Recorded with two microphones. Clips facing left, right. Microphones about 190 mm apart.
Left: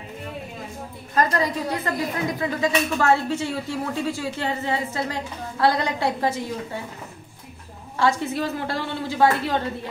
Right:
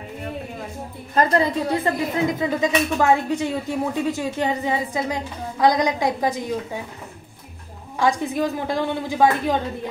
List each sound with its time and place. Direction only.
1.1 s a woman's voice: 25° right (ahead or behind)
8.0 s a woman's voice: 15° right (ahead or behind)